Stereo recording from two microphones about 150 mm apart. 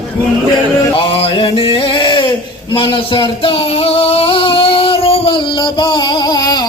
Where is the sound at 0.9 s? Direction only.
40° left (ahead or behind).